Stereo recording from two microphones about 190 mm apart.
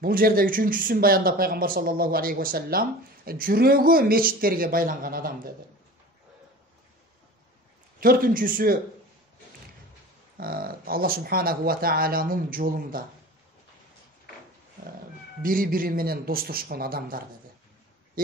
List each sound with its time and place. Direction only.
0.0 s speech: 50° right (ahead or behind)
8.0 s speech: 50° right (ahead or behind)
10.3 s speech: 50° right (ahead or behind)
15.4 s speech: 45° right (ahead or behind)